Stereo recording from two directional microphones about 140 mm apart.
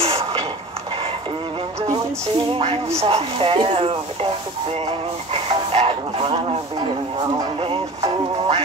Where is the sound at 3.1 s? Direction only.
45° right (ahead or behind).